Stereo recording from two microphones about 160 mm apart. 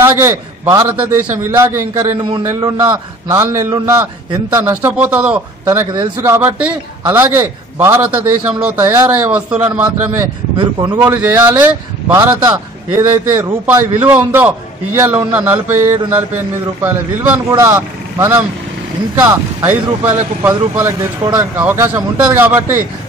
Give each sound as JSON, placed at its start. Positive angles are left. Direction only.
{"t": 0.0, "sound": "a man's voice", "side_deg": -15}
{"t": 2.2, "sound": "a man's voice", "side_deg": -30}
{"t": 3.3, "sound": "a man's voice", "side_deg": -15}